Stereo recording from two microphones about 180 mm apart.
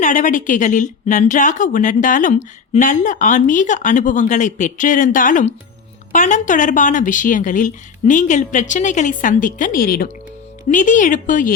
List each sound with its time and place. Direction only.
0.0 s a woman's voice: 45° left (ahead or behind)